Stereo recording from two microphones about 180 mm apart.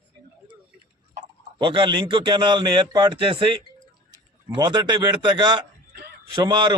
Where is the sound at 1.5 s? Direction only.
30° right (ahead or behind).